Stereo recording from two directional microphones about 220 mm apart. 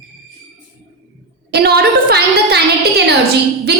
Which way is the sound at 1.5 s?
45° right (ahead or behind).